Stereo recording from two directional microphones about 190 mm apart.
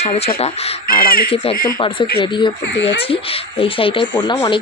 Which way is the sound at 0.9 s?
50° left (ahead or behind).